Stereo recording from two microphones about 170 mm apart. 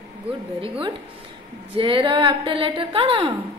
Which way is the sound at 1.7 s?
30° right (ahead or behind).